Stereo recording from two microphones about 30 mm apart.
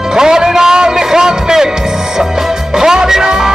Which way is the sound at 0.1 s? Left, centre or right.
Right.